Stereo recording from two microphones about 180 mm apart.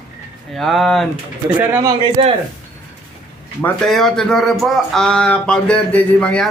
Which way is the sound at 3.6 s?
5° left (ahead or behind).